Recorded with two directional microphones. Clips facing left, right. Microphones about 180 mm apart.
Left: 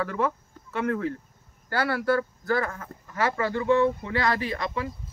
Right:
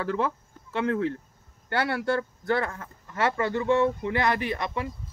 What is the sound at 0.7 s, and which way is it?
Speech, 25° right (ahead or behind).